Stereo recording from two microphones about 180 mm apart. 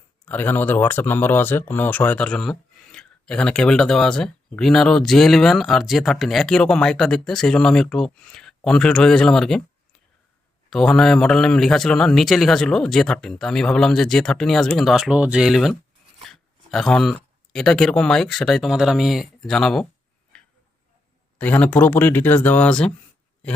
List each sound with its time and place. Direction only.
0.3 s speech: 10° left (ahead or behind)
20.3 s tick-tock: 5° left (ahead or behind)
21.3 s speech: 10° left (ahead or behind)